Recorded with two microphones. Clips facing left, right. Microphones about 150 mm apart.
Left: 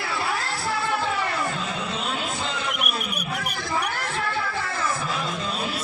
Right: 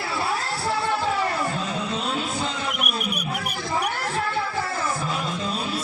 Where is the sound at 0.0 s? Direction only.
30° right (ahead or behind).